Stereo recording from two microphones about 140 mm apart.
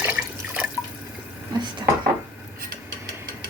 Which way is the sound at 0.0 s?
10° right (ahead or behind).